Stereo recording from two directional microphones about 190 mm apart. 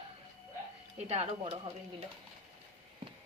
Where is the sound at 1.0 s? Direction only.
35° right (ahead or behind).